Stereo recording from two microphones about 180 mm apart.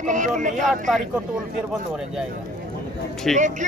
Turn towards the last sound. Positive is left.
turn(degrees=0)  # may be behind; listen again after turning